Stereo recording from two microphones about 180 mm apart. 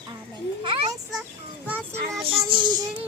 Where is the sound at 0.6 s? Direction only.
30° right (ahead or behind).